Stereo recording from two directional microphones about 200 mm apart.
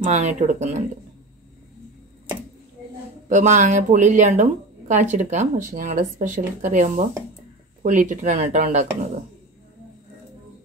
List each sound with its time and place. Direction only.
0.0 s speech: 35° right (ahead or behind)
3.3 s speech: 35° right (ahead or behind)